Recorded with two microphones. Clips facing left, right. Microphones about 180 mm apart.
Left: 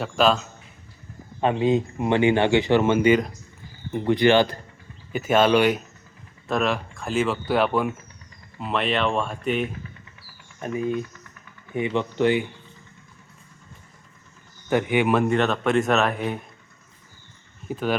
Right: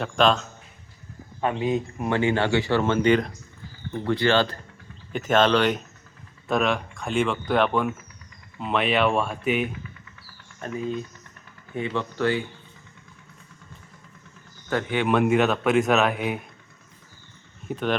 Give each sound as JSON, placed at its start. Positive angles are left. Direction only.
{"t": 0.0, "sound": "speech", "side_deg": 5}
{"t": 1.4, "sound": "a man's voice", "side_deg": 25}
{"t": 3.9, "sound": "speech", "side_deg": 15}
{"t": 10.6, "sound": "speech", "side_deg": 15}
{"t": 14.7, "sound": "speech", "side_deg": 15}
{"t": 15.1, "sound": "speech", "side_deg": -5}
{"t": 17.7, "sound": "speech", "side_deg": 0}